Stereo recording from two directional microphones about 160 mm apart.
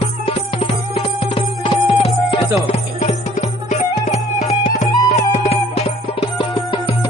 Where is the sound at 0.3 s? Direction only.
35° left (ahead or behind).